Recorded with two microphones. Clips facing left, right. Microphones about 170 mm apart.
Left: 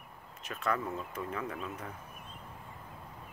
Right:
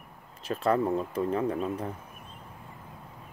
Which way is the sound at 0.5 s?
30° right (ahead or behind).